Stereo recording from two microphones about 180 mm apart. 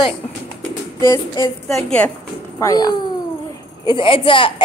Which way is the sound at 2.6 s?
20° left (ahead or behind).